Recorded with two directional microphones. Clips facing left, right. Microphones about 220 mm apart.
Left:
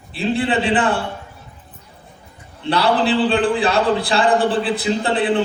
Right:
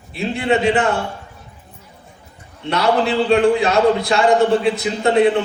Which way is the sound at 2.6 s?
30° left (ahead or behind).